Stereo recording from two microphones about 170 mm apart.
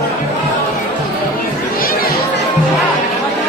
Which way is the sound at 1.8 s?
60° left (ahead or behind).